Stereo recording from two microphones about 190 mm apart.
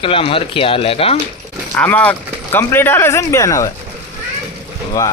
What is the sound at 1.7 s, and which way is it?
Speech, 10° left (ahead or behind).